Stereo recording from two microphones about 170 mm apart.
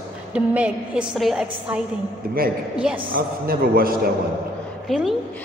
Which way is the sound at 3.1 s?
60° right (ahead or behind).